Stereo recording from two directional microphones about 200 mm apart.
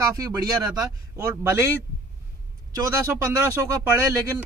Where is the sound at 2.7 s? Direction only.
20° right (ahead or behind).